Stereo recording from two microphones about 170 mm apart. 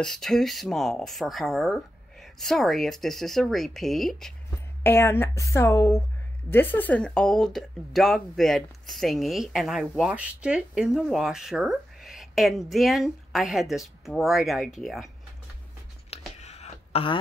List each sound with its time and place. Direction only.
0.0 s speech: centre (ahead or behind)
4.8 s a woman's voice: 15° left (ahead or behind)
16.1 s a sound: 40° left (ahead or behind)